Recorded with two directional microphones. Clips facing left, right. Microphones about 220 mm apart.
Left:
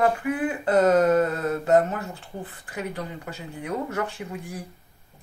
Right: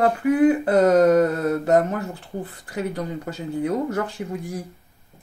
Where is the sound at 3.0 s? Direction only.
45° right (ahead or behind).